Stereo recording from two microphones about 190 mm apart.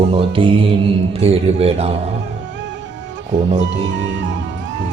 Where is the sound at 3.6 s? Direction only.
75° right (ahead or behind).